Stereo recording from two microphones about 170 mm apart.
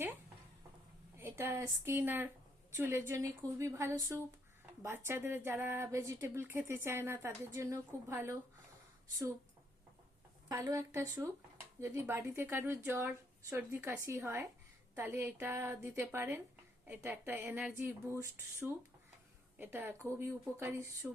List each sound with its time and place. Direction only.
1.1 s a woman's voice: 15° right (ahead or behind)
10.5 s a woman's voice: 20° right (ahead or behind)